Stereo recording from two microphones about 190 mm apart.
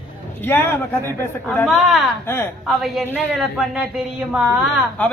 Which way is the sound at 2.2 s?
15° left (ahead or behind).